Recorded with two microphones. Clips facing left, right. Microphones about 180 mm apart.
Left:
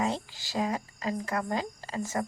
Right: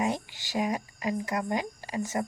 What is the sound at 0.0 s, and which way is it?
Speech, 20° right (ahead or behind).